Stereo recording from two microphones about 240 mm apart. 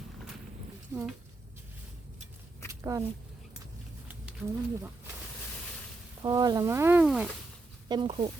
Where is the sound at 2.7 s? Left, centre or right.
Centre.